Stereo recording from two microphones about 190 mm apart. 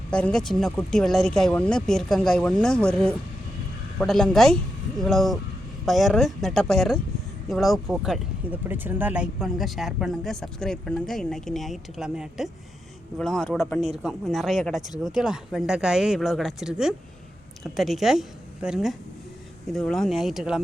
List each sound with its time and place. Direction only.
0.1 s speech: 5° left (ahead or behind)
3.9 s a woman's voice: centre (ahead or behind)